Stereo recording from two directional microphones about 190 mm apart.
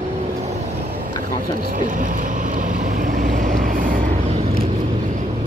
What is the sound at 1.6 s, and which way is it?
Vehicle, 45° right (ahead or behind).